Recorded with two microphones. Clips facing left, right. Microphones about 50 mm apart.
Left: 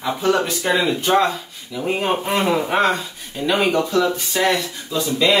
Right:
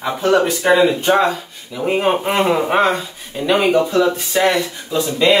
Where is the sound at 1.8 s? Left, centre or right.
Right.